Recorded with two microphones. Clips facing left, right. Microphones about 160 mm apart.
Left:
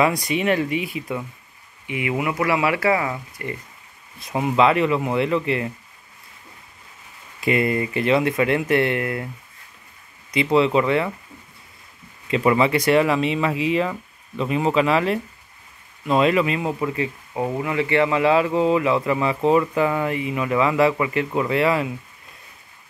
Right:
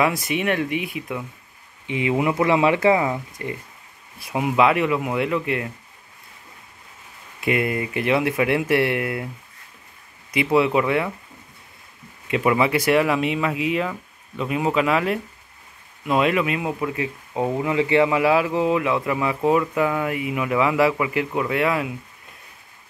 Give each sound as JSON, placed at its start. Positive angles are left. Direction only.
{"t": 0.0, "sound": "speech", "side_deg": -5}
{"t": 1.9, "sound": "speech", "side_deg": -25}
{"t": 7.3, "sound": "speech", "side_deg": -5}
{"t": 10.3, "sound": "speech", "side_deg": -10}
{"t": 12.3, "sound": "speech", "side_deg": -5}
{"t": 17.4, "sound": "speech", "side_deg": -15}